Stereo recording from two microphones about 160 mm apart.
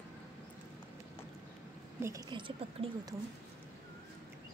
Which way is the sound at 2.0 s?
20° right (ahead or behind).